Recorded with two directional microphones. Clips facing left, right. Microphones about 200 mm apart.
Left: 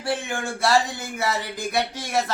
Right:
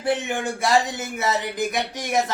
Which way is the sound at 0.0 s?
20° right (ahead or behind).